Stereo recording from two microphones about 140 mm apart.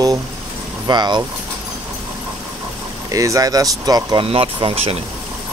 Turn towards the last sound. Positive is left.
turn(degrees=-45)  # may be behind; listen again after turning